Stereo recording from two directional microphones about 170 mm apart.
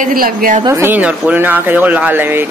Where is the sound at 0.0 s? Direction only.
55° right (ahead or behind).